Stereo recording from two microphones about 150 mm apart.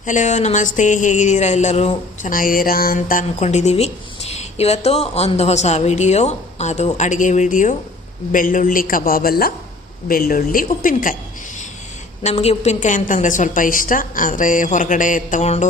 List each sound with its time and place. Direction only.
0.0 s a woman's voice: 55° left (ahead or behind)
2.3 s a man's voice: 70° left (ahead or behind); by 9.5 s 85° left
10.1 s a man's voice: 70° left (ahead or behind)
12.2 s a woman's voice: 45° left (ahead or behind)